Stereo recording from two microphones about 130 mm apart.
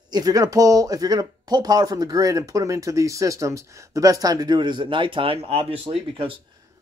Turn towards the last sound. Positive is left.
turn(degrees=-45)  # may be behind; listen again after turning